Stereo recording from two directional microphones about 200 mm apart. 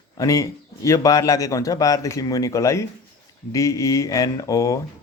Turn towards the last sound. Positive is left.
turn(degrees=15)  # may be behind; listen again after turning